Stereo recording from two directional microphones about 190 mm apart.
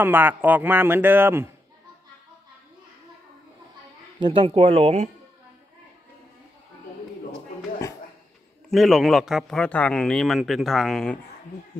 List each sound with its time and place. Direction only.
0.0 s a man's voice: 10° right (ahead or behind)
4.2 s speech: 25° right (ahead or behind)
8.6 s a man's voice: centre (ahead or behind)